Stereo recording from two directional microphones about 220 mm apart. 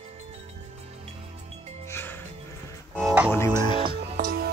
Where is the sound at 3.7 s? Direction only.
30° right (ahead or behind).